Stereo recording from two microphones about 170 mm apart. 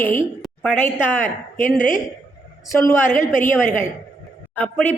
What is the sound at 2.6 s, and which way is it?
A woman's voice, 15° left (ahead or behind).